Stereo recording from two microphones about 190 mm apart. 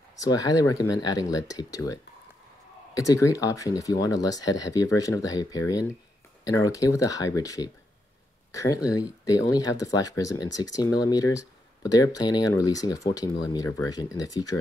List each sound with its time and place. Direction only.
0.2 s speech: 20° left (ahead or behind)